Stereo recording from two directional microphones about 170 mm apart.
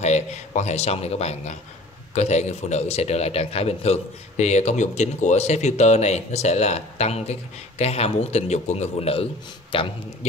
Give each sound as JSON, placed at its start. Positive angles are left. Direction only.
{"t": 0.0, "sound": "a man's voice", "side_deg": 45}